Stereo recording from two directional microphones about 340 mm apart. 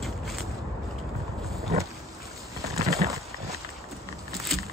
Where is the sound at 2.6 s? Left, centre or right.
Centre.